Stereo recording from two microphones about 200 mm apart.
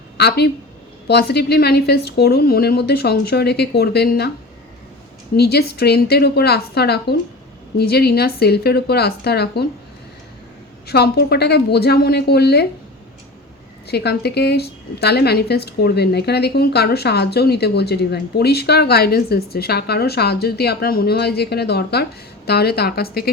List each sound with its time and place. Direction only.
0.2 s a woman's voice: 55° left (ahead or behind)
5.4 s a woman's voice: 55° left (ahead or behind)
10.8 s a woman's voice: 55° left (ahead or behind)
13.8 s a woman's voice: 55° left (ahead or behind)